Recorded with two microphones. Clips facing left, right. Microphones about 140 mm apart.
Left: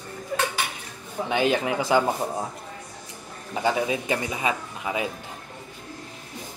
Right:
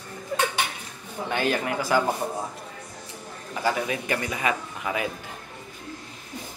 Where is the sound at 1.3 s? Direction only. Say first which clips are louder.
Left 3 dB; 20° left (ahead or behind).